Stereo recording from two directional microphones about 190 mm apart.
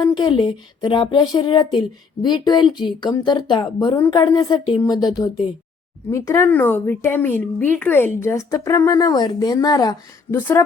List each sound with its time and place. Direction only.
0.0 s a woman's voice: 20° left (ahead or behind)